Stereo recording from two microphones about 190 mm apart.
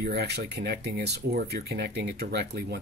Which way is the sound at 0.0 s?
60° right (ahead or behind).